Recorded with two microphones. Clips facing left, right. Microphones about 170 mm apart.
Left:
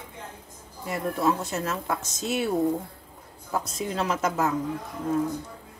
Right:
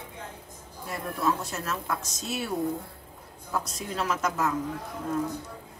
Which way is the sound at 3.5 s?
25° left (ahead or behind).